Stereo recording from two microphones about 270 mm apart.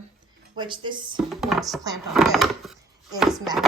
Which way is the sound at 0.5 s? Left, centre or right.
Centre.